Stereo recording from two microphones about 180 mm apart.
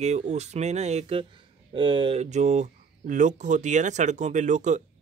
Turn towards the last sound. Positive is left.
turn(degrees=-40)  # may be behind; listen again after turning